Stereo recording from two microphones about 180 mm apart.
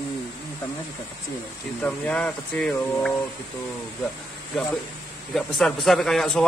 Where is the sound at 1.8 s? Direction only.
10° left (ahead or behind).